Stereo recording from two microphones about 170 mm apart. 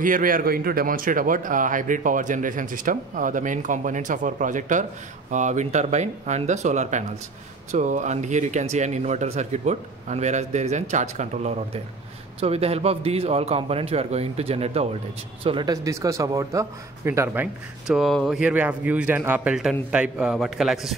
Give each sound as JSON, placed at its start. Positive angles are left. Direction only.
{"t": 0.0, "sound": "a man's voice", "side_deg": -55}
{"t": 15.4, "sound": "speech", "side_deg": -25}